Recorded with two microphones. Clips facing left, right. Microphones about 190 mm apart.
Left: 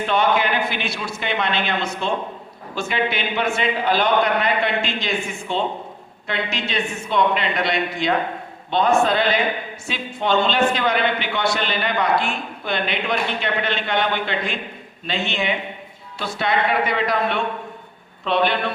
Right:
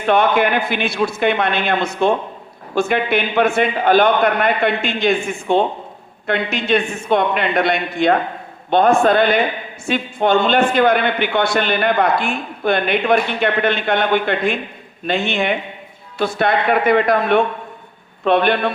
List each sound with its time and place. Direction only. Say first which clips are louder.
0.0 s a man's voice: right 4 dB; 55° right (ahead or behind)